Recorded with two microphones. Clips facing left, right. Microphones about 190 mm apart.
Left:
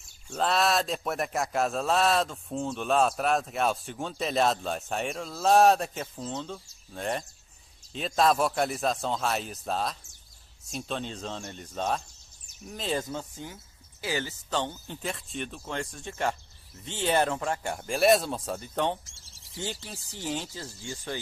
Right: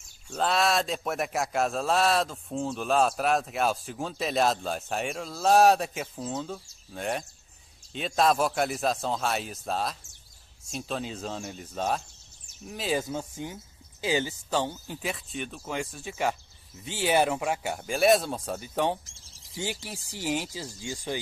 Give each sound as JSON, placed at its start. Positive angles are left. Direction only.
{"t": 0.3, "sound": "speech", "side_deg": 0}